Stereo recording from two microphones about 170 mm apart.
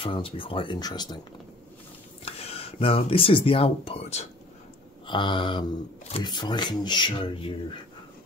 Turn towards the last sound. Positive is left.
turn(degrees=30)  # may be behind; listen again after turning